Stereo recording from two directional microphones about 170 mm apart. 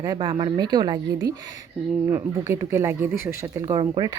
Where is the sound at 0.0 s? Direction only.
25° right (ahead or behind).